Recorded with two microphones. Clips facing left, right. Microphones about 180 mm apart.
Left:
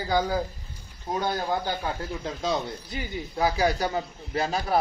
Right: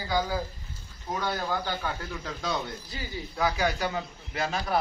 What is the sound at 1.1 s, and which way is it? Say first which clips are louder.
Speech: left 3 dB; 30° left (ahead or behind).